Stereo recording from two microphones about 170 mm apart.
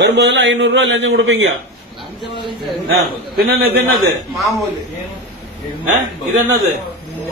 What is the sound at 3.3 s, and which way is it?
Speech, 65° right (ahead or behind).